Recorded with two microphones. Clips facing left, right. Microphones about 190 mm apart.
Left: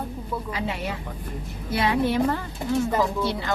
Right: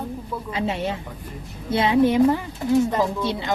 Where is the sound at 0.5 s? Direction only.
25° right (ahead or behind).